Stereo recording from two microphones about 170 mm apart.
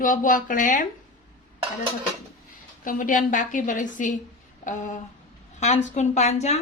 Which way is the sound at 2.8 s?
55° left (ahead or behind).